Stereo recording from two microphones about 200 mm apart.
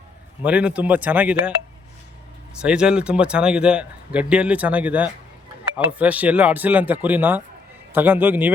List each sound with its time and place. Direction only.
0.4 s speech: 5° right (ahead or behind)
2.6 s a man's voice: 5° right (ahead or behind)